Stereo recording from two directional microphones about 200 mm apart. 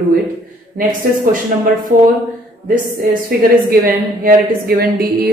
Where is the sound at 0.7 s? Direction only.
45° right (ahead or behind).